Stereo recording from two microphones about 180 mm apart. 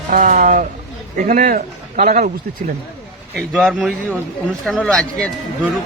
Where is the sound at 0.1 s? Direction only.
45° right (ahead or behind).